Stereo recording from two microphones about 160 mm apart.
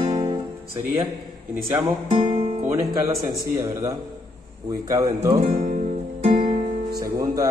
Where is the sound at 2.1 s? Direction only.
35° right (ahead or behind).